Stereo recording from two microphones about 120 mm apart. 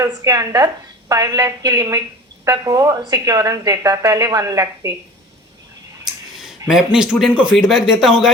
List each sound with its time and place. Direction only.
0.0 s a woman's voice: 30° right (ahead or behind)
6.3 s a sound: 5° right (ahead or behind)
6.7 s speech: 5° right (ahead or behind)